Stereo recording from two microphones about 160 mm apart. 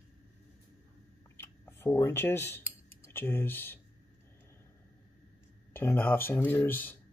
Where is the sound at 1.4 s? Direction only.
15° left (ahead or behind).